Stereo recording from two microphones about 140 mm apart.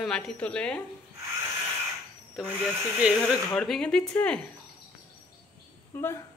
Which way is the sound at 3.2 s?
5° left (ahead or behind).